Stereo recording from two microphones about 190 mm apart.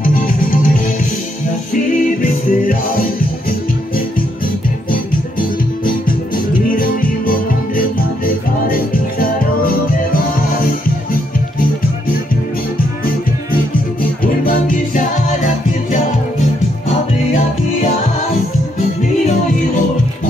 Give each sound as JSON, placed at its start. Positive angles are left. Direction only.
{"t": 0.0, "sound": "music", "side_deg": 45}
{"t": 5.9, "sound": "music", "side_deg": 50}
{"t": 14.2, "sound": "music", "side_deg": 50}